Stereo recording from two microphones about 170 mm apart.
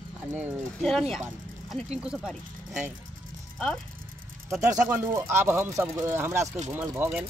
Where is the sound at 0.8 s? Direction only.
Centre (ahead or behind).